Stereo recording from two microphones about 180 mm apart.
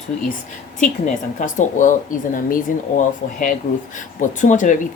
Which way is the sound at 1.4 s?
45° left (ahead or behind).